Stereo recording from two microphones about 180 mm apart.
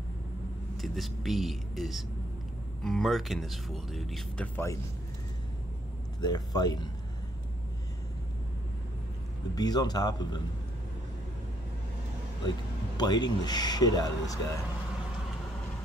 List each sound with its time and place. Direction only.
0.7 s speech: centre (ahead or behind)
6.2 s speech: 20° left (ahead or behind)
9.6 s speech: 20° left (ahead or behind)
12.4 s speech: 25° left (ahead or behind)